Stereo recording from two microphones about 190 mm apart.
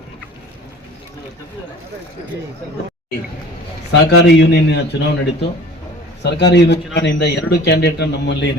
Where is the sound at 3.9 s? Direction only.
60° left (ahead or behind).